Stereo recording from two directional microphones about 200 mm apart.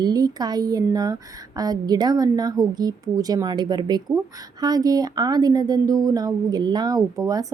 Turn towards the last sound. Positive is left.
turn(degrees=-20)  # may be behind; listen again after turning